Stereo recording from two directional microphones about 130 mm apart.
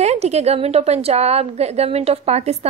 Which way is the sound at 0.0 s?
55° right (ahead or behind).